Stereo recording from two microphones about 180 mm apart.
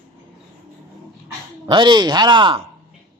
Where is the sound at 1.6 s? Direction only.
25° right (ahead or behind).